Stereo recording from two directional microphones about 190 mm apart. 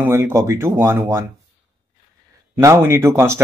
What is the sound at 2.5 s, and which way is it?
Speech, 15° right (ahead or behind).